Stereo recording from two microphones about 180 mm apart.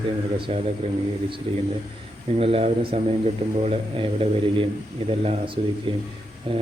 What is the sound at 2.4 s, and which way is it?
Speech, 30° right (ahead or behind).